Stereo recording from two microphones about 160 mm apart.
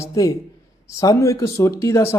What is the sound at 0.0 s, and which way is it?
Speech, 20° left (ahead or behind).